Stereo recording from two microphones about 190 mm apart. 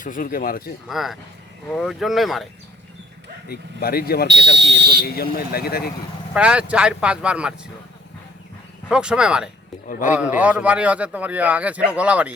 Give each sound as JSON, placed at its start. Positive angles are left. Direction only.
{"t": 0.0, "sound": "speech", "side_deg": 45}
{"t": 0.9, "sound": "speech", "side_deg": 0}
{"t": 3.5, "sound": "speech", "side_deg": 55}
{"t": 4.3, "sound": "speech", "side_deg": -65}
{"t": 5.0, "sound": "speech", "side_deg": 55}
{"t": 6.3, "sound": "speech", "side_deg": -5}
{"t": 8.9, "sound": "a man's voice", "side_deg": -5}